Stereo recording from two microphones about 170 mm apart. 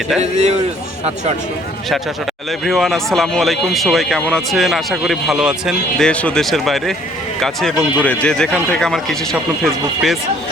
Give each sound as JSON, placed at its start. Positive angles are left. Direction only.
{"t": 0.2, "sound": "a man's voice", "side_deg": -40}
{"t": 2.5, "sound": "speech", "side_deg": 0}